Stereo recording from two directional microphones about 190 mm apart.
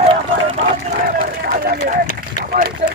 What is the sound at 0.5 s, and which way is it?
Run, 35° right (ahead or behind).